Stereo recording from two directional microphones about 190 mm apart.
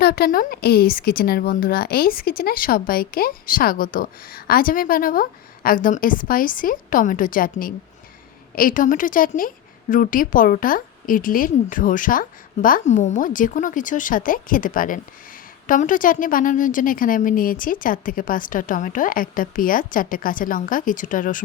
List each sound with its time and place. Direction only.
0.0 s a woman's voice: 55° left (ahead or behind)